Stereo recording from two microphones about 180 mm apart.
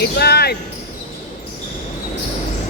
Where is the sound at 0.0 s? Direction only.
65° left (ahead or behind).